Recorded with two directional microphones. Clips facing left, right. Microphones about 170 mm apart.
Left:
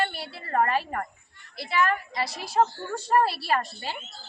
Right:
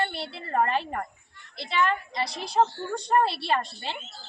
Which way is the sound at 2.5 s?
25° right (ahead or behind).